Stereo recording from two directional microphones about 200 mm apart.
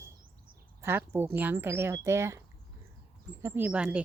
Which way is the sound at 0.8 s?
10° right (ahead or behind).